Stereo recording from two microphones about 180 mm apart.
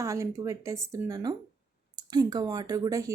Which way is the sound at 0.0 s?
15° right (ahead or behind).